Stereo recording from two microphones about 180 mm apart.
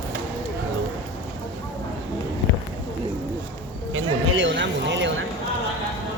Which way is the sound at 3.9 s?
90° right.